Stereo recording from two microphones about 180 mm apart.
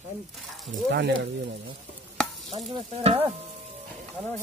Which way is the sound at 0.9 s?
70° right (ahead or behind).